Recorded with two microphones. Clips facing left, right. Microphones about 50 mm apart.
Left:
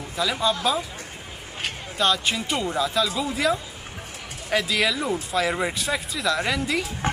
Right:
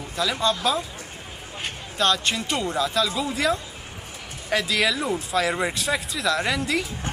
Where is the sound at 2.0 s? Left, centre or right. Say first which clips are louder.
Even; centre.